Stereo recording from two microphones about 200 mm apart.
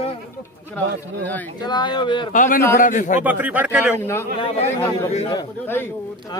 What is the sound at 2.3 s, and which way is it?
Speech, 40° left (ahead or behind).